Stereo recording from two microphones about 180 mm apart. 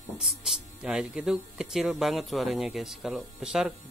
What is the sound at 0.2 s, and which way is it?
Speech, 5° right (ahead or behind).